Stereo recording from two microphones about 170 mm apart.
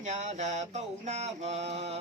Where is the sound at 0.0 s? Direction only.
45° right (ahead or behind).